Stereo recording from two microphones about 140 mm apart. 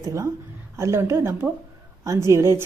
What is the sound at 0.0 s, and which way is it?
Speech, 20° right (ahead or behind).